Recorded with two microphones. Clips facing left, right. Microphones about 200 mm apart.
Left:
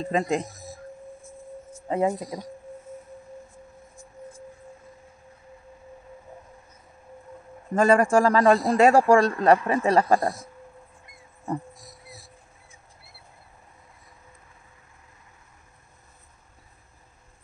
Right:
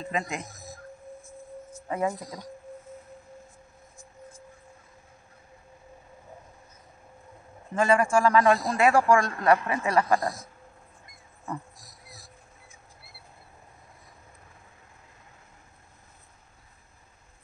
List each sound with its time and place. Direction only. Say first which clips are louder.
0.0 s a man's voice: left 7 dB; 30° left (ahead or behind)
1.7 s speech: left 5 dB; 25° left (ahead or behind)
7.7 s a man's voice: left 4 dB; 40° left (ahead or behind)
11.4 s a sound: left 6 dB; 30° left (ahead or behind)